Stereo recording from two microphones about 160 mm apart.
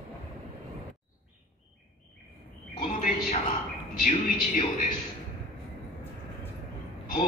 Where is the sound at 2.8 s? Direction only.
55° left (ahead or behind).